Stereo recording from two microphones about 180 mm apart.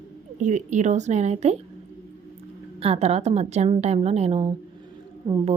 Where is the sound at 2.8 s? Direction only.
35° right (ahead or behind).